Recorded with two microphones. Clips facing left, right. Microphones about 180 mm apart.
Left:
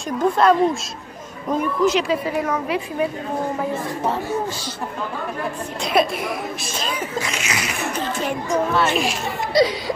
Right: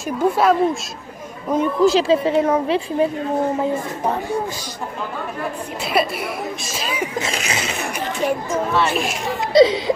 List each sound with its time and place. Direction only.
0.2 s speech: 5° right (ahead or behind)
1.6 s a woman's voice: 30° right (ahead or behind)
5.9 s speech: 5° right (ahead or behind)
7.2 s a woman's voice: 30° right (ahead or behind)
8.5 s speech: centre (ahead or behind)
9.5 s a woman's voice: 25° right (ahead or behind)